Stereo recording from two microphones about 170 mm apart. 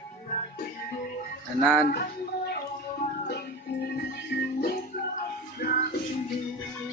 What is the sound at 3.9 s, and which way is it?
Music, 70° left (ahead or behind).